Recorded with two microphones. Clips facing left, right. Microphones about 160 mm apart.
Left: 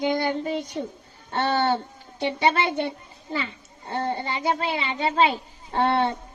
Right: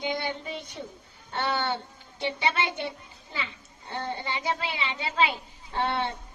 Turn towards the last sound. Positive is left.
turn(degrees=35)  # may be behind; listen again after turning